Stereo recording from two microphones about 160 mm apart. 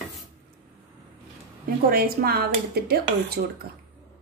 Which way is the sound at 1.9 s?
70° right (ahead or behind).